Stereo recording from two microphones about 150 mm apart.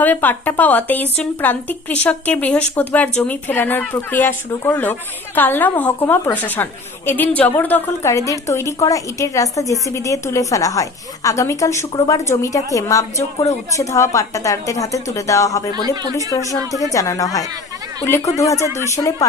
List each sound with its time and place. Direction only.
0.0 s a woman's voice: 10° left (ahead or behind)
15.7 s speech: 25° right (ahead or behind)
16.8 s a woman's voice: 20° left (ahead or behind)
18.4 s a woman's voice: 20° left (ahead or behind)